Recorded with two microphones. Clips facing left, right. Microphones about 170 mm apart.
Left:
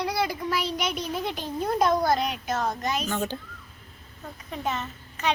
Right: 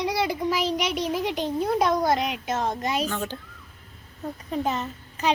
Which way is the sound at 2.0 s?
20° right (ahead or behind).